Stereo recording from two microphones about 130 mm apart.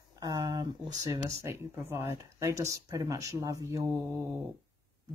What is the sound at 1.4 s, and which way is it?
Speech, 20° right (ahead or behind).